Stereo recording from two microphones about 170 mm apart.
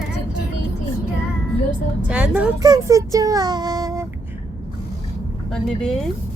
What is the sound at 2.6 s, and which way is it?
Child singing, 20° right (ahead or behind).